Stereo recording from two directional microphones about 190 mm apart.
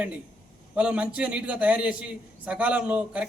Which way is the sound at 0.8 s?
5° right (ahead or behind).